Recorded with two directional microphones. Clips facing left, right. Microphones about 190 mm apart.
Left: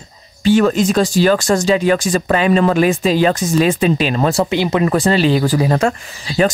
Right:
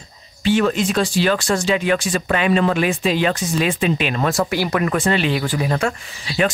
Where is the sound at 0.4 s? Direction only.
40° left (ahead or behind); by 4.9 s 25° left (ahead or behind).